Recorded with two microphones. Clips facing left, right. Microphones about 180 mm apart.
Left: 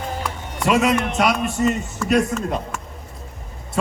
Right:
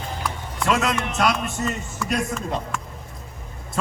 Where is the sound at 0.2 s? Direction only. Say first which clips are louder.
Left 2 dB; 10° left (ahead or behind).